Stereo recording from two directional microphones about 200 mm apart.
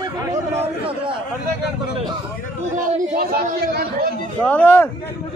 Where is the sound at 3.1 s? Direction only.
50° right (ahead or behind).